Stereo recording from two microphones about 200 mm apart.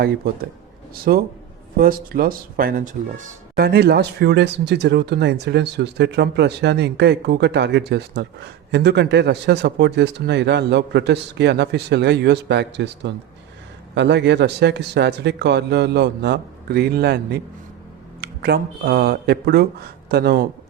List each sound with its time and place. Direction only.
1.1 s speech: 50° right (ahead or behind)
3.7 s speech: 55° right (ahead or behind)